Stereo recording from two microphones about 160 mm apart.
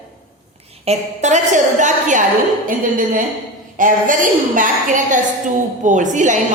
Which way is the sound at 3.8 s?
55° right (ahead or behind).